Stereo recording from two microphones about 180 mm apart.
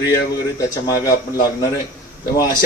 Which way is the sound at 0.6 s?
20° left (ahead or behind).